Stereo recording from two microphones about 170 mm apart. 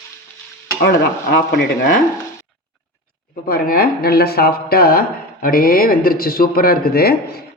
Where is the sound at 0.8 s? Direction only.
65° left (ahead or behind).